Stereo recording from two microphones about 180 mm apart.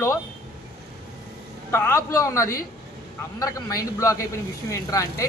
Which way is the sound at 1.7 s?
15° left (ahead or behind).